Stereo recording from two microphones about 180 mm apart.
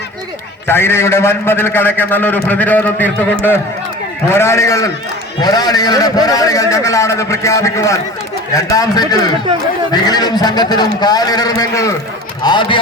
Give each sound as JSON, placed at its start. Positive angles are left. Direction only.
{"t": 0.7, "sound": "a man's voice", "side_deg": 15}
{"t": 4.4, "sound": "a man's voice", "side_deg": 15}